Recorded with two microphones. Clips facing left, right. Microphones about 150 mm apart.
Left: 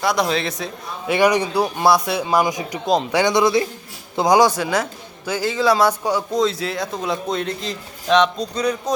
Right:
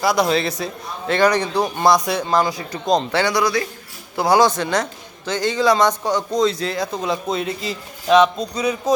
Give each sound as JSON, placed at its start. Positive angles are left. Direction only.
{"t": 0.0, "sound": "a man's voice", "side_deg": 0}
{"t": 1.0, "sound": "a man's voice", "side_deg": 10}
{"t": 4.2, "sound": "a man's voice", "side_deg": 15}